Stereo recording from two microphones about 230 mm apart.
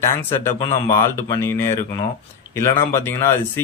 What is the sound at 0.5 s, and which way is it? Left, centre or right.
A man's voice, centre.